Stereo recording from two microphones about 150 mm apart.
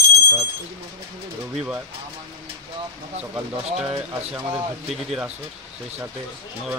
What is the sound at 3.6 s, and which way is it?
Speech, 45° right (ahead or behind).